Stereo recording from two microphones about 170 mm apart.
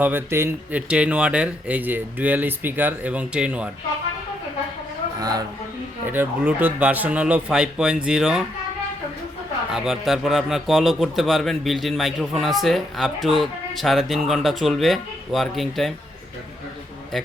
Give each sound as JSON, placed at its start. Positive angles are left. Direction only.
{"t": 0.0, "sound": "speech", "side_deg": -10}
{"t": 5.2, "sound": "speech", "side_deg": -20}
{"t": 6.1, "sound": "speech", "side_deg": -10}
{"t": 9.7, "sound": "speech", "side_deg": 0}